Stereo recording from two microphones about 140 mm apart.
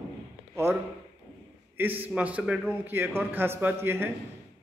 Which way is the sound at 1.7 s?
15° right (ahead or behind).